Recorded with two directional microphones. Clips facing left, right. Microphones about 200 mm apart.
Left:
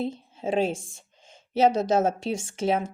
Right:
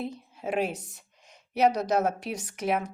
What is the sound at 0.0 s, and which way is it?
A woman's voice, 25° left (ahead or behind).